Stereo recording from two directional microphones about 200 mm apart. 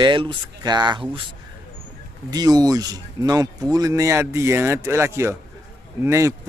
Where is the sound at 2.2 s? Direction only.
20° right (ahead or behind).